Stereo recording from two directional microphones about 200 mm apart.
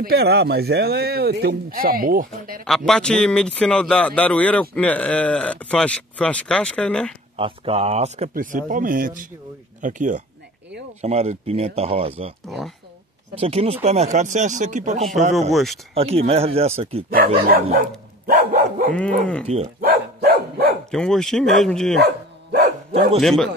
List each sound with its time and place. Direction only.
0.0 s speech: 55° right (ahead or behind)
2.6 s speech: 5° left (ahead or behind)
7.3 s speech: 30° right (ahead or behind)
12.4 s speech: centre (ahead or behind)
13.3 s speech: 30° right (ahead or behind)
15.5 s speech: centre (ahead or behind)
15.9 s speech: 30° right (ahead or behind)
17.6 s dog: 45° right (ahead or behind)
18.9 s speech: 5° left (ahead or behind)
19.4 s speech: 30° right (ahead or behind)
19.8 s dog: 50° right (ahead or behind)
20.9 s speech: centre (ahead or behind)
22.5 s dog: 45° right (ahead or behind)
23.2 s speech: centre (ahead or behind)